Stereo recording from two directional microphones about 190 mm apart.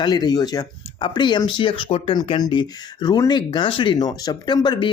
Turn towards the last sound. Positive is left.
turn(degrees=25)  # may be behind; listen again after turning